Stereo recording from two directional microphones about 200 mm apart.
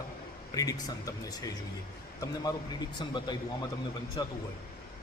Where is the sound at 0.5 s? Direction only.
20° left (ahead or behind).